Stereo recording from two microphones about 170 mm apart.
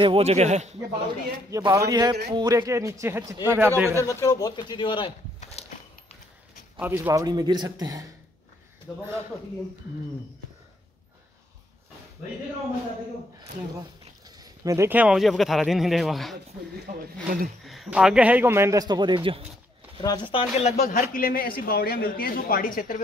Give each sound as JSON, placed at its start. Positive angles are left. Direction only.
{"t": 0.0, "sound": "speech", "side_deg": -35}
{"t": 1.5, "sound": "a man's voice", "side_deg": -20}
{"t": 4.0, "sound": "speech", "side_deg": 15}
{"t": 5.4, "sound": "horse", "side_deg": 40}
{"t": 6.8, "sound": "a man's voice", "side_deg": -10}
{"t": 14.2, "sound": "speech", "side_deg": -20}
{"t": 16.8, "sound": "speech", "side_deg": -60}
{"t": 17.6, "sound": "a man's voice", "side_deg": -5}
{"t": 20.0, "sound": "speech", "side_deg": 25}
{"t": 20.8, "sound": "a man's voice", "side_deg": 50}